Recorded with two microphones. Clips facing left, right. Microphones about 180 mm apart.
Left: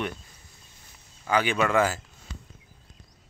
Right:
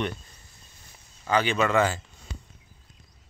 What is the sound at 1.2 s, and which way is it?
Speech, 10° left (ahead or behind).